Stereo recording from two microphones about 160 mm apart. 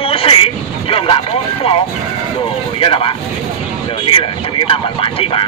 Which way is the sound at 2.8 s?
30° left (ahead or behind).